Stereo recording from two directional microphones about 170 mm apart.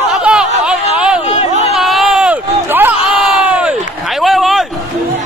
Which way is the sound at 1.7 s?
Centre (ahead or behind).